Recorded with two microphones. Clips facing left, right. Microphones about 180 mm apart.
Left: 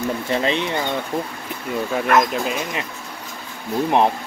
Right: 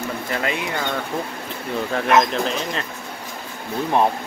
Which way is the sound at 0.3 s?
25° left (ahead or behind).